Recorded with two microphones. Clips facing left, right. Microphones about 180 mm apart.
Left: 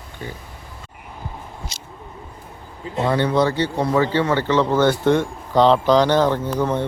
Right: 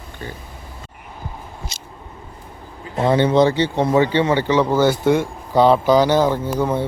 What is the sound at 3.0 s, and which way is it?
Speech, 20° right (ahead or behind).